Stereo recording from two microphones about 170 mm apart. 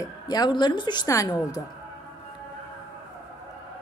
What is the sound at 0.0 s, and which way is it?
A woman's voice, 25° left (ahead or behind).